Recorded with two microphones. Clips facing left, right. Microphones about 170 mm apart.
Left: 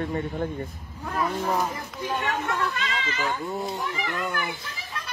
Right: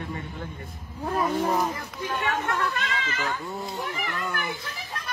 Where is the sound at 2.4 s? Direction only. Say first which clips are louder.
Even; 60° right (ahead or behind).